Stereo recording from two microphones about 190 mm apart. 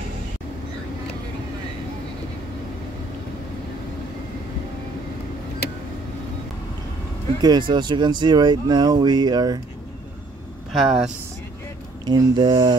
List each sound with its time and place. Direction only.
7.4 s speech: 25° right (ahead or behind)
10.7 s speech: centre (ahead or behind)
12.0 s speech: 25° right (ahead or behind)